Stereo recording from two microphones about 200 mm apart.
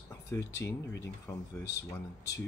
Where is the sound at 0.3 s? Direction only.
15° left (ahead or behind).